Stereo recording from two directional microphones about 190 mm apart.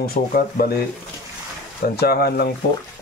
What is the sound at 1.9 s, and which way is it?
Speech, 55° left (ahead or behind).